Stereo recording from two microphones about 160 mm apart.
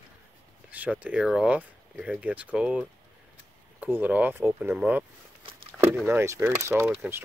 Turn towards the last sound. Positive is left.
turn(degrees=-15)  # may be behind; listen again after turning